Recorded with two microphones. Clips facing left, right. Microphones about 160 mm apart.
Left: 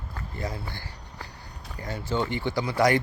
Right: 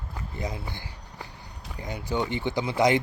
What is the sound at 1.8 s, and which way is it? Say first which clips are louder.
Speech: even; 15° right (ahead or behind).